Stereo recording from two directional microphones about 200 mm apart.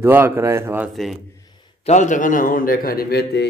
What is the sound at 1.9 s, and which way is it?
A man's voice, 40° left (ahead or behind).